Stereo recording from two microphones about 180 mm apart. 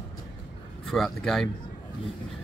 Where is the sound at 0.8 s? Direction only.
Centre (ahead or behind).